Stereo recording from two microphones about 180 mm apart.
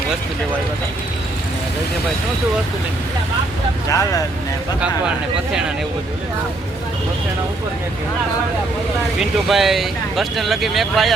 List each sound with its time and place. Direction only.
3.8 s speech: 20° left (ahead or behind)
9.1 s speech: centre (ahead or behind)